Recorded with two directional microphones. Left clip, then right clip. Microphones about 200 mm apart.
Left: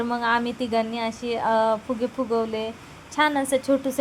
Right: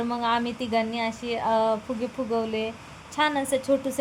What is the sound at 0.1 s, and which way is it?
A woman's voice, 20° left (ahead or behind).